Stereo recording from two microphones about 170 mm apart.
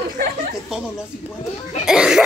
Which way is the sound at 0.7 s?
5° right (ahead or behind).